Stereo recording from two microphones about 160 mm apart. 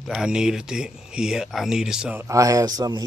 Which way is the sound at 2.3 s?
20° right (ahead or behind).